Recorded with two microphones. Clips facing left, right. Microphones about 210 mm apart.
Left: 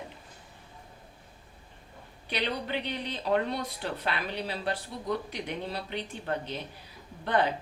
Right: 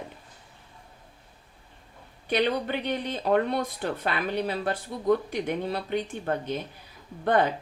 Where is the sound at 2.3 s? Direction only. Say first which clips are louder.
Right 7 dB; 50° right (ahead or behind).